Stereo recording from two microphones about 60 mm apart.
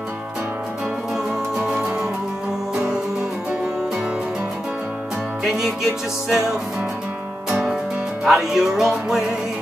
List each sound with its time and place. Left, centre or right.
1.7 s music: centre
5.4 s music: centre